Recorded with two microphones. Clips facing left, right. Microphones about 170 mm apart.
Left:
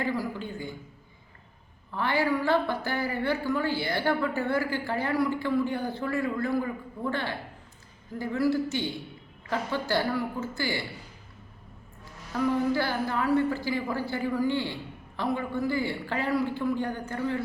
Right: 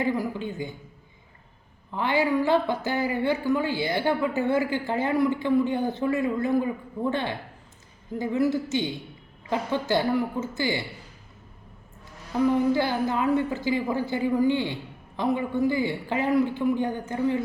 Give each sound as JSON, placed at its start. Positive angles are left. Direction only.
{"t": 0.0, "sound": "a woman's voice", "side_deg": -20}
{"t": 1.9, "sound": "a woman's voice", "side_deg": -15}
{"t": 12.3, "sound": "a woman's voice", "side_deg": -20}